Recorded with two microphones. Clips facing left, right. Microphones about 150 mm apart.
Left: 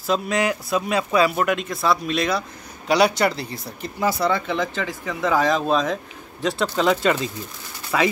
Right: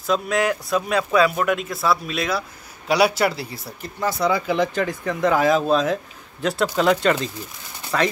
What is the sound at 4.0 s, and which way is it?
Speech, 5° left (ahead or behind).